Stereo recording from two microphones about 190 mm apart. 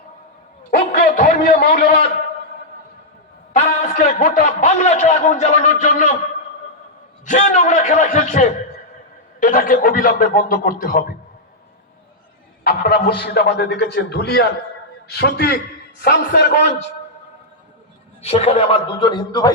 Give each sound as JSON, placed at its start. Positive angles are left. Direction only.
{"t": 0.9, "sound": "a sound", "side_deg": 40}
{"t": 3.5, "sound": "a man's voice", "side_deg": 40}
{"t": 7.3, "sound": "a man's voice", "side_deg": 40}
{"t": 12.6, "sound": "a man's voice", "side_deg": 55}
{"t": 18.2, "sound": "a man's voice", "side_deg": 35}